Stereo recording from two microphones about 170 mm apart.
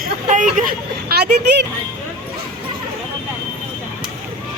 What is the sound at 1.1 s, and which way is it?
Speech, 75° right (ahead or behind).